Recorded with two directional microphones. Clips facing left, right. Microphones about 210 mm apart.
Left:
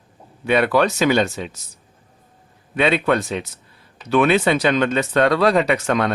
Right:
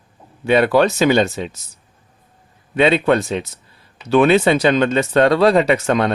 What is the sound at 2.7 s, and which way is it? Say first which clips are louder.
Speech: right 4 dB; 25° right (ahead or behind).